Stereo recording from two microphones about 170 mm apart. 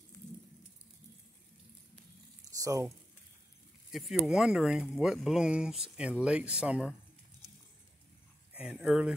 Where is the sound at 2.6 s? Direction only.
20° right (ahead or behind).